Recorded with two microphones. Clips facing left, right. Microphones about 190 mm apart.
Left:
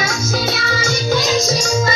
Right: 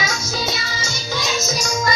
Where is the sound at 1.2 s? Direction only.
35° left (ahead or behind).